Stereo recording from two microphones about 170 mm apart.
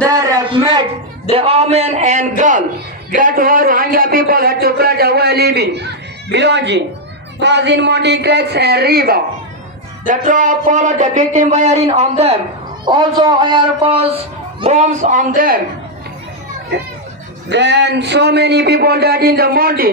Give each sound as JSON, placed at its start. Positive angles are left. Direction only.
{"t": 0.1, "sound": "a sound", "side_deg": -20}
{"t": 1.3, "sound": "speech", "side_deg": -35}
{"t": 3.2, "sound": "a sound", "side_deg": -55}
{"t": 6.3, "sound": "a man's voice", "side_deg": -90}
{"t": 10.0, "sound": "speech", "side_deg": -50}
{"t": 12.8, "sound": "a man's voice", "side_deg": -25}
{"t": 14.6, "sound": "speech", "side_deg": -40}
{"t": 17.5, "sound": "a man's voice", "side_deg": -90}